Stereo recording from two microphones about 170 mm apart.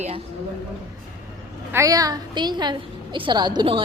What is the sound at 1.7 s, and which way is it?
A woman's voice, 20° right (ahead or behind).